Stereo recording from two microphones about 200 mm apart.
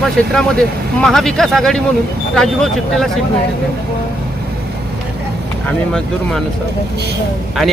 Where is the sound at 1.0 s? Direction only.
Centre (ahead or behind).